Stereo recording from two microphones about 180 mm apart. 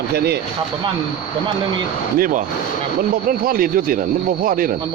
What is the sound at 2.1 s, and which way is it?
Speech, 50° right (ahead or behind).